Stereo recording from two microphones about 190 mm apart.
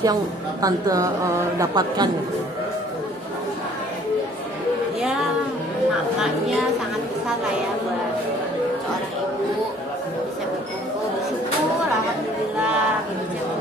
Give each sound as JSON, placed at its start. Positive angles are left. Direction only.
{"t": 0.0, "sound": "a woman's voice", "side_deg": -20}